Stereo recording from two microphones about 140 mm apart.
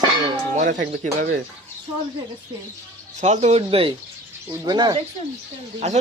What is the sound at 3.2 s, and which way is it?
Speech, 55° right (ahead or behind).